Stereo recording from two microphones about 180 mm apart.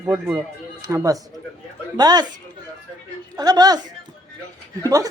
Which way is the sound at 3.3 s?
20° right (ahead or behind).